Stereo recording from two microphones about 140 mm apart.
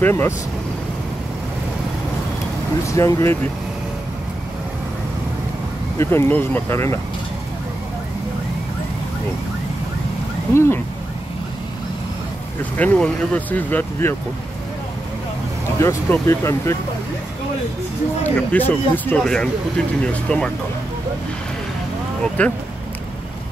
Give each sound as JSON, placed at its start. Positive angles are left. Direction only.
{"t": 0.0, "sound": "speech", "side_deg": 15}
{"t": 2.9, "sound": "speech", "side_deg": 20}
{"t": 5.9, "sound": "speech", "side_deg": 15}
{"t": 10.5, "sound": "speech", "side_deg": 20}
{"t": 12.7, "sound": "speech", "side_deg": 10}
{"t": 15.8, "sound": "speech", "side_deg": 20}
{"t": 18.2, "sound": "speech", "side_deg": 10}
{"t": 22.4, "sound": "speech", "side_deg": 10}